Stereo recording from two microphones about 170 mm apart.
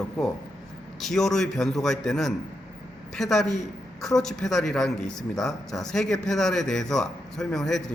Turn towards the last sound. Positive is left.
turn(degrees=0)  # may be behind; listen again after turning